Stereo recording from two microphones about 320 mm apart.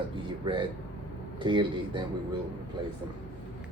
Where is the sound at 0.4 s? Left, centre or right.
Centre.